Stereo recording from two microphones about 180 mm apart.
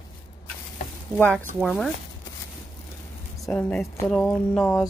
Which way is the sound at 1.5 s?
Centre (ahead or behind).